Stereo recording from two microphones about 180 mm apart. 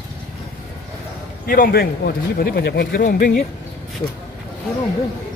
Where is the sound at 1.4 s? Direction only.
55° left (ahead or behind).